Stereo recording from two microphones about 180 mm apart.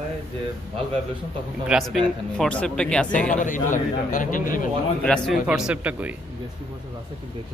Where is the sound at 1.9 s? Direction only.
5° left (ahead or behind).